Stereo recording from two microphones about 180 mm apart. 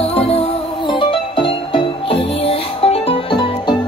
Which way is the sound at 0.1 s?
35° left (ahead or behind).